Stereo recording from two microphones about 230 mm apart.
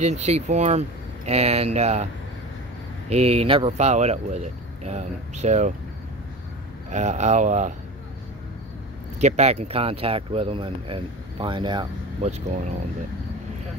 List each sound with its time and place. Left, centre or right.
0.0 s speech: right
3.1 s speech: right
6.9 s speech: right
9.2 s speech: right